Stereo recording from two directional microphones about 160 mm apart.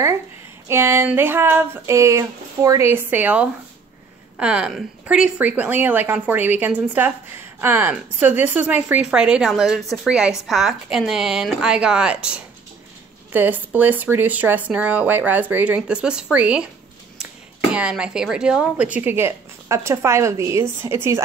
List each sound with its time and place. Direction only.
0.7 s a woman's voice: 15° right (ahead or behind)
17.7 s a woman's voice: 5° right (ahead or behind)